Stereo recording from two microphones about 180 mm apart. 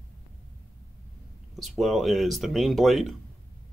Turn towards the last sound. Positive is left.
turn(degrees=0)  # may be behind; listen again after turning